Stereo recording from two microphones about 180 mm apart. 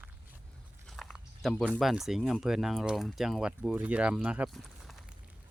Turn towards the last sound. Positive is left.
turn(degrees=0)  # may be behind; listen again after turning